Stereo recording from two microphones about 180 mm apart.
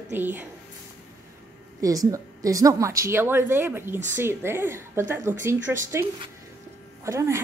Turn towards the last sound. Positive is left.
turn(degrees=-15)  # may be behind; listen again after turning